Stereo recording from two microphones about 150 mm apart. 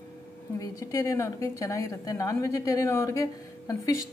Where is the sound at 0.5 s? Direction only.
25° left (ahead or behind).